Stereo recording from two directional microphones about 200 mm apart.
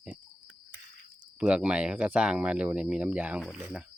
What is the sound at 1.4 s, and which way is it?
Speech, 5° right (ahead or behind).